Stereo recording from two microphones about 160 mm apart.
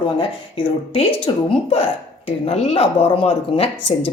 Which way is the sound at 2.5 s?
40° left (ahead or behind).